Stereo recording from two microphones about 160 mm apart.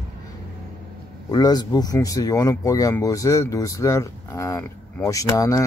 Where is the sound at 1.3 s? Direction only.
25° left (ahead or behind).